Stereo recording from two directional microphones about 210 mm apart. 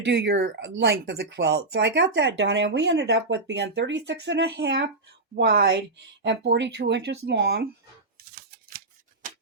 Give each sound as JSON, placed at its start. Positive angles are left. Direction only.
{"t": 0.0, "sound": "speech", "side_deg": -55}
{"t": 8.4, "sound": "scissors", "side_deg": -45}